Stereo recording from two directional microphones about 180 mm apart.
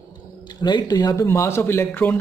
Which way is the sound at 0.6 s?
25° left (ahead or behind).